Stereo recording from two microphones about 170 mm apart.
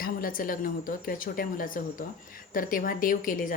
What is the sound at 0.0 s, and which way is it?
A woman's voice, 55° left (ahead or behind).